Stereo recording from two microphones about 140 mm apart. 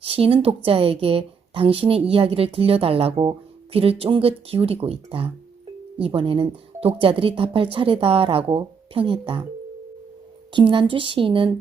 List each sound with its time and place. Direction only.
0.0 s a woman's voice: 45° right (ahead or behind)
10.5 s speech: 35° right (ahead or behind)